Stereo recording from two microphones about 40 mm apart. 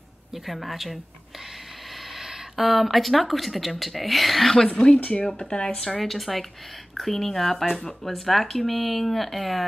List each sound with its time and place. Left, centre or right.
0.5 s speech: centre
2.5 s speech: centre
4.9 s speech: left
5.2 s speech: centre
5.9 s speech: centre